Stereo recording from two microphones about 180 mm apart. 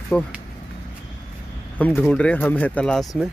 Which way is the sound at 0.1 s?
5° left (ahead or behind).